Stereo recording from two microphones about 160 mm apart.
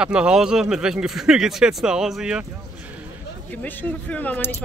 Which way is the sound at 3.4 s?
10° left (ahead or behind).